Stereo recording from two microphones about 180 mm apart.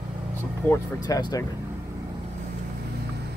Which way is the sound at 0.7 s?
20° left (ahead or behind).